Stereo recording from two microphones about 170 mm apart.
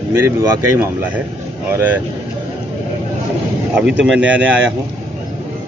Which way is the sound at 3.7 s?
5° right (ahead or behind).